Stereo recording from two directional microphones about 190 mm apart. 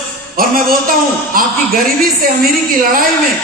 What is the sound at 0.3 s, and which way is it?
Speech, 50° right (ahead or behind).